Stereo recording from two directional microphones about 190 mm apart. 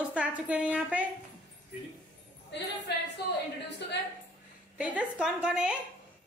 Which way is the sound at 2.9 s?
60° left (ahead or behind).